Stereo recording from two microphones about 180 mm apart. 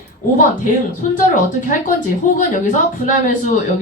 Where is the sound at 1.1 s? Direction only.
45° left (ahead or behind).